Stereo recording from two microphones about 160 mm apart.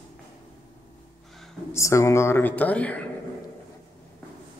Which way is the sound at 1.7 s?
20° left (ahead or behind).